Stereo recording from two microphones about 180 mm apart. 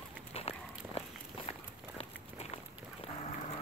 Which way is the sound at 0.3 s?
35° left (ahead or behind).